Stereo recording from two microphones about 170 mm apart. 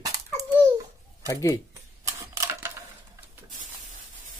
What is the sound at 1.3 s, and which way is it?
Speech, 20° left (ahead or behind).